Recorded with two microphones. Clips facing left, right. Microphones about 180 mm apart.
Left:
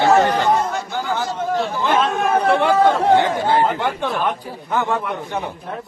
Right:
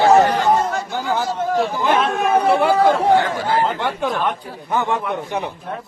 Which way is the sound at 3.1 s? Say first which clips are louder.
Left 2 dB; 20° left (ahead or behind).